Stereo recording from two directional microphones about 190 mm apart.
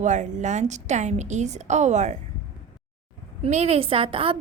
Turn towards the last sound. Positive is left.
turn(degrees=-30)  # may be behind; listen again after turning